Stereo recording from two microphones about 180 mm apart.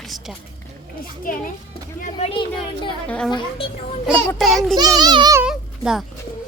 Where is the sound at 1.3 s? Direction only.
50° left (ahead or behind).